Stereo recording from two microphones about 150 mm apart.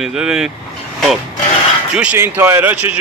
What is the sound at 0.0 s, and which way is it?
Speech, 5° right (ahead or behind).